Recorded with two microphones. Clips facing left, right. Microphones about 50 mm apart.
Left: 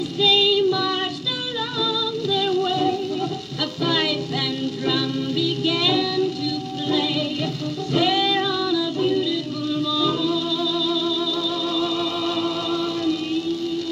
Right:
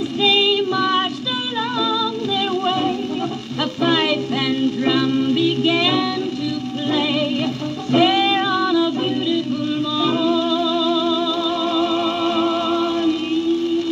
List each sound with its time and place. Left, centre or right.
0.2 s female singing: right
1.8 s music: right